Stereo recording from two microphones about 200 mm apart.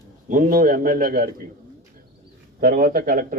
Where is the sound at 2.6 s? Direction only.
45° right (ahead or behind).